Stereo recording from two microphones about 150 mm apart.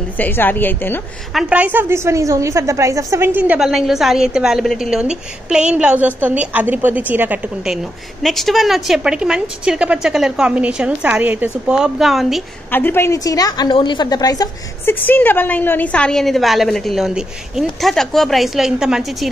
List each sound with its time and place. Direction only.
0.2 s a woman's voice: 15° left (ahead or behind)
1.3 s a woman's voice: 10° right (ahead or behind)
12.7 s a woman's voice: 15° left (ahead or behind)
15.0 s a woman's voice: 10° left (ahead or behind); by 19.3 s 5° right (ahead or behind)